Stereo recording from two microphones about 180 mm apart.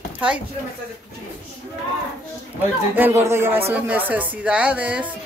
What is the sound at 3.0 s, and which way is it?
Speech, 10° right (ahead or behind).